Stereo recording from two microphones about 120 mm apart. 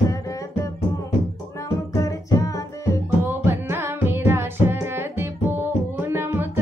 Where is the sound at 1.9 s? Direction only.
30° left (ahead or behind).